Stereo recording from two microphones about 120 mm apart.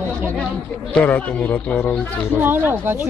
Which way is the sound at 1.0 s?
15° left (ahead or behind).